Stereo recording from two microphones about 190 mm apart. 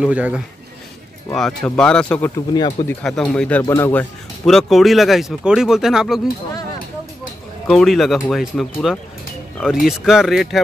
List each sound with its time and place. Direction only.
0.0 s speech: 5° right (ahead or behind)
2.5 s speech: 20° left (ahead or behind)
3.0 s speech: 5° left (ahead or behind)
4.5 s speech: centre (ahead or behind)
7.6 s speech: centre (ahead or behind)